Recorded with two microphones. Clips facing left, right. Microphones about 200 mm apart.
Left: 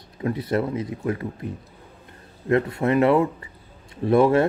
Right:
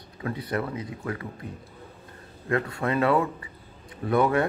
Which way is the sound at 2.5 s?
25° left (ahead or behind).